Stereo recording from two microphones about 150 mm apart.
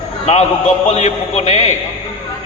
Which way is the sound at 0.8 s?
50° left (ahead or behind).